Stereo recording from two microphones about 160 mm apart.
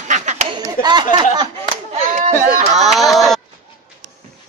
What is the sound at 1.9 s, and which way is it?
Chop, 50° right (ahead or behind).